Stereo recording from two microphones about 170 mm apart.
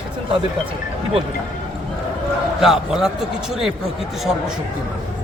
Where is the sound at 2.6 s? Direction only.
Centre (ahead or behind).